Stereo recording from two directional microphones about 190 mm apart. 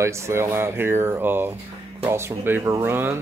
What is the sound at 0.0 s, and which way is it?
Speech, 15° right (ahead or behind).